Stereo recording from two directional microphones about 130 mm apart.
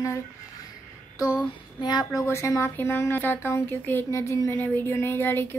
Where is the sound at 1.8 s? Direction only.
35° left (ahead or behind).